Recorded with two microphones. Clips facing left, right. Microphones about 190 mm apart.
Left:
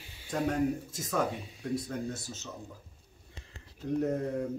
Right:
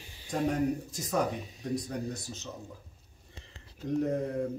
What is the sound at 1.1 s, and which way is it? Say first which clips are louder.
Speech: right 1 dB; 20° right (ahead or behind).